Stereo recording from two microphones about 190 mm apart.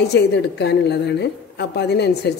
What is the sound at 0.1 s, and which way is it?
A woman's voice, 60° left (ahead or behind).